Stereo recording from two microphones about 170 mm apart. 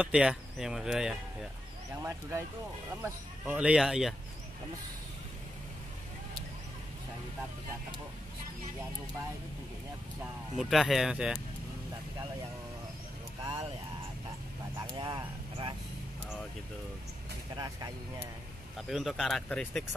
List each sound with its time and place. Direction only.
0.0 s speech: 5° right (ahead or behind)
2.0 s speech: 20° right (ahead or behind)
3.0 s speech: 5° right (ahead or behind)
10.5 s speech: 5° right (ahead or behind)
14.9 s speech: 25° right (ahead or behind)
17.6 s speech: 20° right (ahead or behind)
18.8 s speech: centre (ahead or behind)